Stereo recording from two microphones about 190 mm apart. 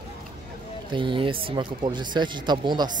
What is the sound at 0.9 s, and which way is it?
Speech, 25° right (ahead or behind).